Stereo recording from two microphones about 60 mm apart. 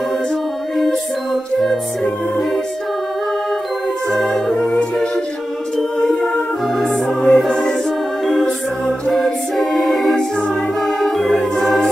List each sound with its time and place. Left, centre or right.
0.7 s music: centre
4.1 s a capella: centre
4.6 s a capella: centre
6.8 s music: centre
11.0 s organ: centre